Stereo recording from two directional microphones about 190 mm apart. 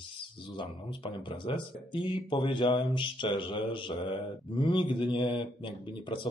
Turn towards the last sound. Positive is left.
turn(degrees=25)  # may be behind; listen again after turning